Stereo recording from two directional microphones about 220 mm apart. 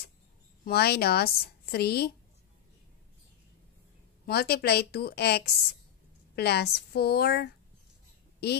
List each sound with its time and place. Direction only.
0.7 s a woman's voice: 45° left (ahead or behind)
4.3 s a woman's voice: 45° left (ahead or behind)